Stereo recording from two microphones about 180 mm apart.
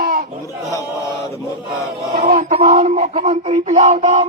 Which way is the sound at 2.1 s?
50° right (ahead or behind).